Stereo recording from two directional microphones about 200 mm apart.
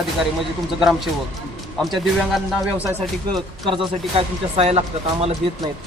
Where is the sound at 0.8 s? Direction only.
Centre (ahead or behind).